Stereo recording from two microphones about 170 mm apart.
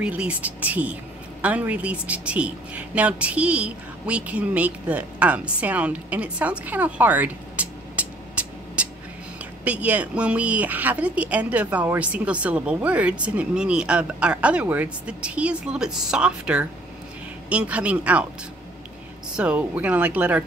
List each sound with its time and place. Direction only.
0.0 s a woman's voice: 10° right (ahead or behind)
19.3 s a woman's voice: 10° right (ahead or behind)